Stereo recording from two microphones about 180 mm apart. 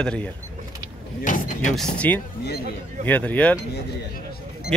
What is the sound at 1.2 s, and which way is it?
Speech, 45° left (ahead or behind).